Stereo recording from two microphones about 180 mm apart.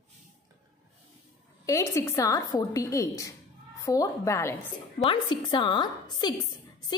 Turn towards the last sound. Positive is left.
turn(degrees=25)  # may be behind; listen again after turning